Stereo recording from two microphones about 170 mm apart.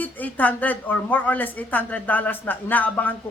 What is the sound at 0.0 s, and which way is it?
A woman's voice, 10° left (ahead or behind).